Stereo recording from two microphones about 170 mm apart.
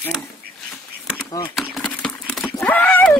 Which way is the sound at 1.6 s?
5° left (ahead or behind).